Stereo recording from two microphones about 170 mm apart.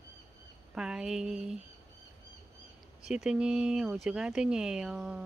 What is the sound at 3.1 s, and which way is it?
Speech, 5° right (ahead or behind).